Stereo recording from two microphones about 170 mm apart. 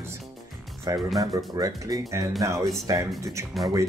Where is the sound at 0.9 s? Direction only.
20° right (ahead or behind).